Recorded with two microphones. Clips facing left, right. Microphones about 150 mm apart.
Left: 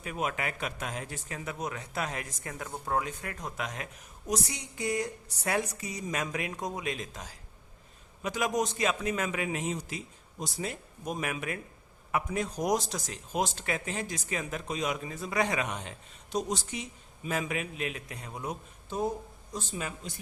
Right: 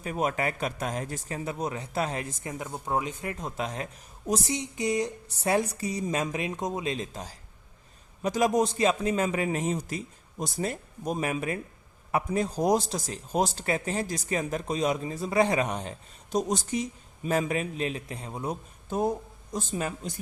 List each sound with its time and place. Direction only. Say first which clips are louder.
0.0 s a woman's voice: right 5 dB; 40° right (ahead or behind)
18.9 s speech: right 4 dB; 50° right (ahead or behind)